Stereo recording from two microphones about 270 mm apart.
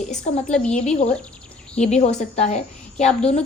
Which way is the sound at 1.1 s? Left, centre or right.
Centre.